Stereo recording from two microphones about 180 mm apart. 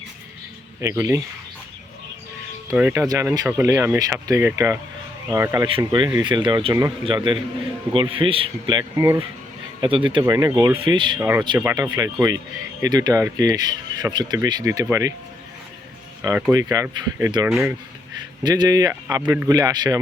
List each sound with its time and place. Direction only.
0.8 s speech: 15° right (ahead or behind)
2.7 s speech: 10° right (ahead or behind)
5.6 s speech: 30° right (ahead or behind)
11.2 s speech: 15° right (ahead or behind)
16.2 s speech: 20° right (ahead or behind)
18.4 s speech: 20° right (ahead or behind)